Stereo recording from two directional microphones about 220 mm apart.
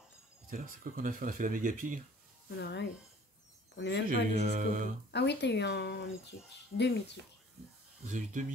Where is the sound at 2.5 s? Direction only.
50° left (ahead or behind).